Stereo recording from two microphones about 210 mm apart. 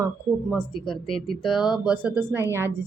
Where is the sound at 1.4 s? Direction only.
Centre (ahead or behind).